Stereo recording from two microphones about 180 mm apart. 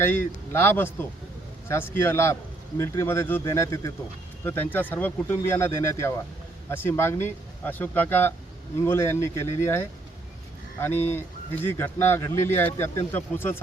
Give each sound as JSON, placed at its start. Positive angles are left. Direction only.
{"t": 0.0, "sound": "speech", "side_deg": 10}